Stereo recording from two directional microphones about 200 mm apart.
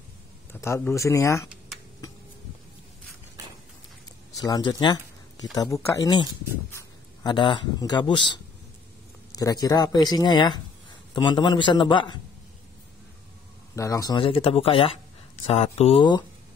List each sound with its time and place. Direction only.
0.5 s speech: 10° left (ahead or behind)
4.4 s speech: 20° left (ahead or behind)
13.7 s speech: 15° left (ahead or behind)